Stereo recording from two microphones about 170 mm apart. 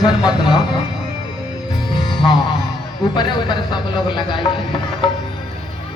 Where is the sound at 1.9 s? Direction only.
25° left (ahead or behind).